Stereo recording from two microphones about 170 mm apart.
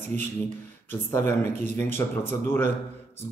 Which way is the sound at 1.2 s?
10° left (ahead or behind).